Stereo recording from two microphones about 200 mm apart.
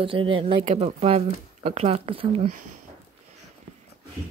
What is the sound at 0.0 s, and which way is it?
Speech, 25° right (ahead or behind).